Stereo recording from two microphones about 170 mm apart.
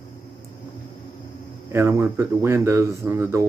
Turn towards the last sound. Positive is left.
turn(degrees=-15)  # may be behind; listen again after turning